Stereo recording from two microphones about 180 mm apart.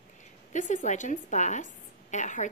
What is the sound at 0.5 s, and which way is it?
A woman's voice, 45° left (ahead or behind).